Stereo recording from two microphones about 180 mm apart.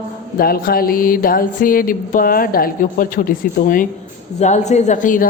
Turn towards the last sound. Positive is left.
turn(degrees=45)  # may be behind; listen again after turning